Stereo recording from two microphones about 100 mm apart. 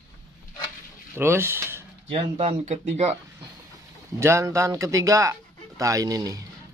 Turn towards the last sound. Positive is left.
turn(degrees=-35)  # may be behind; listen again after turning